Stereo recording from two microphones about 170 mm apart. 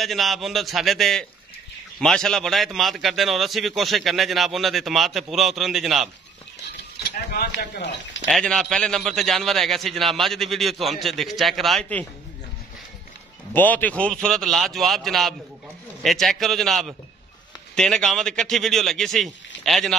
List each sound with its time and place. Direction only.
0.0 s a man's voice: centre (ahead or behind)
7.0 s speech: 70° left (ahead or behind)
8.3 s a man's voice: 5° left (ahead or behind)
13.5 s a man's voice: 10° left (ahead or behind)